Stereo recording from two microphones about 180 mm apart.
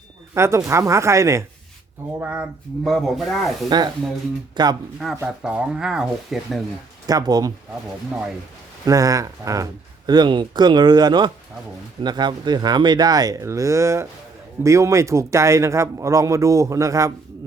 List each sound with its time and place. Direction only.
0.3 s a man's voice: 15° right (ahead or behind)
4.5 s speech: 25° right (ahead or behind)
5.1 s speech: 10° right (ahead or behind)
7.1 s speech: 20° right (ahead or behind)
8.9 s a man's voice: 20° right (ahead or behind)